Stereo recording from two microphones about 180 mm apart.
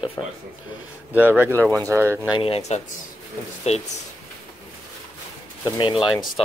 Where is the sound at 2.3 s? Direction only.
30° left (ahead or behind).